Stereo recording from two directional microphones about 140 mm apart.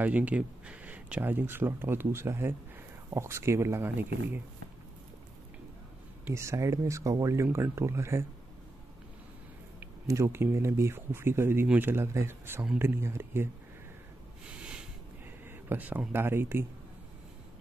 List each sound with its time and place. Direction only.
0.0 s speech: 10° right (ahead or behind)
6.2 s speech: 20° right (ahead or behind)
9.8 s speech: 20° right (ahead or behind)
14.6 s a sound: 5° right (ahead or behind)
15.7 s speech: 10° right (ahead or behind)